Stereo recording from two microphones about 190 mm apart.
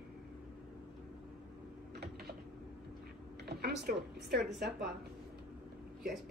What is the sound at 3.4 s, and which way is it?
Speech, 60° right (ahead or behind).